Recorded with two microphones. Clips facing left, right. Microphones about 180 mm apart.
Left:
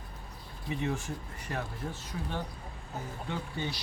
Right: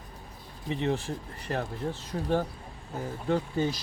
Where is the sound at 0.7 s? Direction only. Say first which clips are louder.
Right 4 dB; 35° right (ahead or behind).